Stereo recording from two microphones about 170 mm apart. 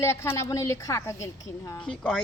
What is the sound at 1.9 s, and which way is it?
Speech, 5° left (ahead or behind).